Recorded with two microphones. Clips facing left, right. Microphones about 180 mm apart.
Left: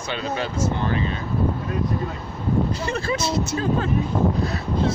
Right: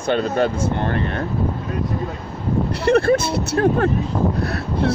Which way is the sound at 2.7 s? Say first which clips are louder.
Right 10 dB; 65° right (ahead or behind).